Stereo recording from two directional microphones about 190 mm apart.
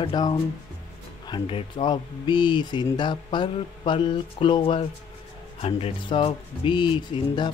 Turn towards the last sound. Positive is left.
turn(degrees=25)  # may be behind; listen again after turning